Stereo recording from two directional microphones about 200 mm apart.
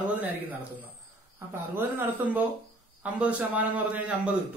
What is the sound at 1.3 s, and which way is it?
Speech, 10° right (ahead or behind).